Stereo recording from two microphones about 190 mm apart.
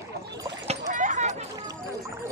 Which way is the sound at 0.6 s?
40° right (ahead or behind).